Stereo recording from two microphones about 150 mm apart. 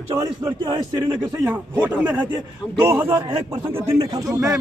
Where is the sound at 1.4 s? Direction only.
10° right (ahead or behind).